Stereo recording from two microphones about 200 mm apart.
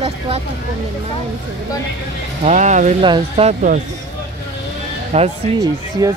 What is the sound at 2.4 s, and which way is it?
Speech, 35° right (ahead or behind).